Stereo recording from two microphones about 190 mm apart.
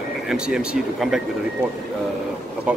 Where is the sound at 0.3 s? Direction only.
5° right (ahead or behind).